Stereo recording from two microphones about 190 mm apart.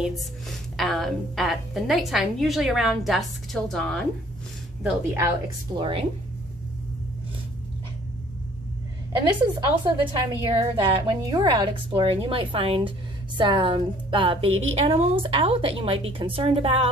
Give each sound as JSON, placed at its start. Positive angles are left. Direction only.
{"t": 0.7, "sound": "a woman's voice", "side_deg": 0}
{"t": 4.8, "sound": "a woman's voice", "side_deg": -15}
{"t": 5.8, "sound": "a woman's voice", "side_deg": -25}
{"t": 9.2, "sound": "a woman's voice", "side_deg": -25}